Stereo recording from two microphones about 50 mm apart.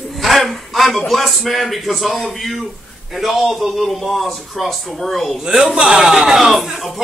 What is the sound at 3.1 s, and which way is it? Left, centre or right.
A man's voice, centre.